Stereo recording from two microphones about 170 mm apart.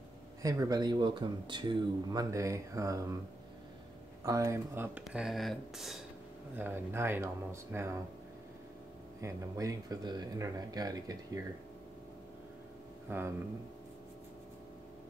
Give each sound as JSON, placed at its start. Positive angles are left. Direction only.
{"t": 0.4, "sound": "speech", "side_deg": -20}
{"t": 4.2, "sound": "speech", "side_deg": -20}
{"t": 6.5, "sound": "speech", "side_deg": -10}
{"t": 9.2, "sound": "speech", "side_deg": -20}
{"t": 13.1, "sound": "speech", "side_deg": -15}